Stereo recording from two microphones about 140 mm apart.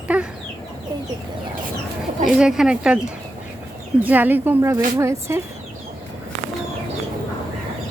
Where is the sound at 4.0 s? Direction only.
10° right (ahead or behind).